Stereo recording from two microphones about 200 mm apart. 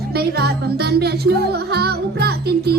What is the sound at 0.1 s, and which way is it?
Music, 55° right (ahead or behind).